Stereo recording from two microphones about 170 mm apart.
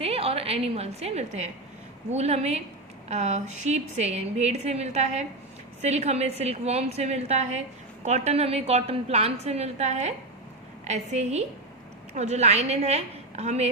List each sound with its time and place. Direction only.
0.0 s a woman's voice: 35° right (ahead or behind)